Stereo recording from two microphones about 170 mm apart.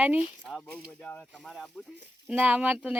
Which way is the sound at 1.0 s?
5° left (ahead or behind).